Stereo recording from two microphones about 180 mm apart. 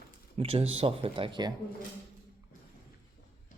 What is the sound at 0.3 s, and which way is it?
Speech, 30° right (ahead or behind).